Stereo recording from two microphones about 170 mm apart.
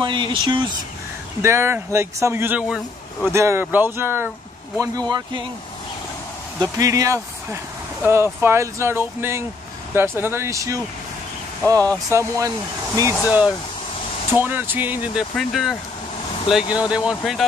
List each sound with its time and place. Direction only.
0.0 s speech: 30° right (ahead or behind)
1.4 s speech: 15° right (ahead or behind)
4.7 s speech: 25° right (ahead or behind)
6.6 s speech: 20° right (ahead or behind)
11.9 s speech: 20° right (ahead or behind)
14.3 s speech: 10° right (ahead or behind)
15.3 s speech: centre (ahead or behind)